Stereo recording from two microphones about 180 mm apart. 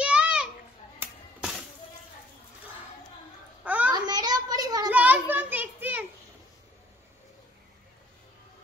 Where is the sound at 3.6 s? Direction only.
10° right (ahead or behind).